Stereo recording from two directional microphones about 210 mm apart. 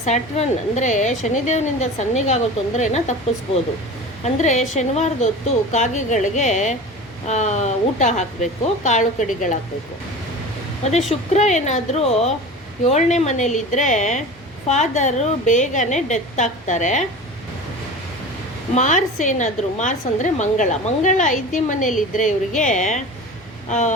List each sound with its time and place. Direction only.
0.0 s a woman's voice: 35° left (ahead or behind)
4.2 s a woman's voice: 35° left (ahead or behind)
10.8 s a woman's voice: 30° left (ahead or behind)
18.7 s a woman's voice: 35° left (ahead or behind)